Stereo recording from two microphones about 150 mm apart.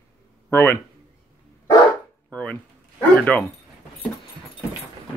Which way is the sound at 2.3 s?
10° left (ahead or behind).